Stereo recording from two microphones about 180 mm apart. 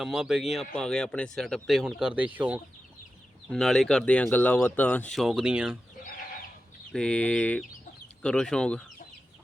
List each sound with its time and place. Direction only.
0.0 s speech: 5° right (ahead or behind)
3.5 s speech: centre (ahead or behind)
6.9 s a sound: 5° left (ahead or behind)
8.2 s speech: 5° left (ahead or behind)